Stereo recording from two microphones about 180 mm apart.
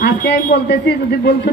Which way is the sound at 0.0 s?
65° left (ahead or behind).